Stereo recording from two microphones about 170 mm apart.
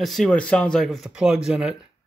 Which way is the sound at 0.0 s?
Centre (ahead or behind).